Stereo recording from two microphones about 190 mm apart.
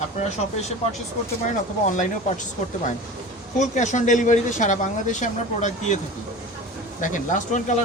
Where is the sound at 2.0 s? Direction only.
40° left (ahead or behind).